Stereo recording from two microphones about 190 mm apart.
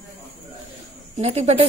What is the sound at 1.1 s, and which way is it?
Speech, 35° right (ahead or behind).